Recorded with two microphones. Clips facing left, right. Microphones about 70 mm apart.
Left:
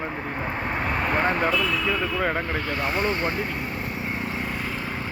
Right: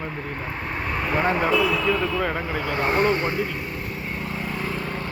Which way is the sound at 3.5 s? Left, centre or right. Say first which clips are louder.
Left 1 dB; centre.